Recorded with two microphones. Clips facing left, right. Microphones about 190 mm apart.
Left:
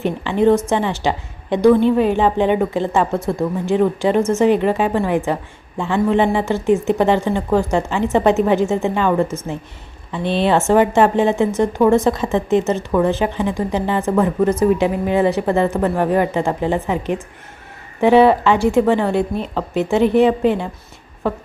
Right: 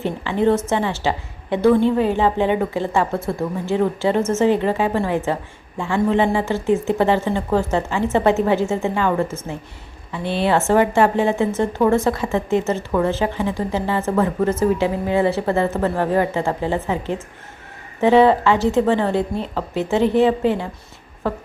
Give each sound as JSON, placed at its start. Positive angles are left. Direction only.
{"t": 0.0, "sound": "speech", "side_deg": 15}